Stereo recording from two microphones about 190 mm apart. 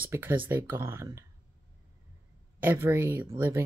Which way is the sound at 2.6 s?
10° right (ahead or behind).